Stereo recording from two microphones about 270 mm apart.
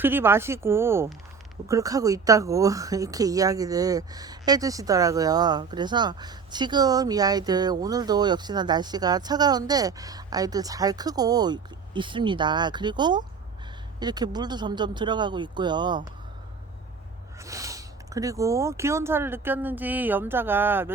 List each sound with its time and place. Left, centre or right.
0.0 s speech: centre
17.4 s speech: centre